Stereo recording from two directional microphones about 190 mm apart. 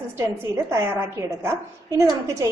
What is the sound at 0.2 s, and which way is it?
A woman's voice, 15° right (ahead or behind).